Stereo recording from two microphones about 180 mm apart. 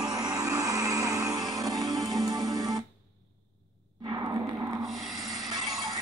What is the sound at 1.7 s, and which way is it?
Music, centre (ahead or behind).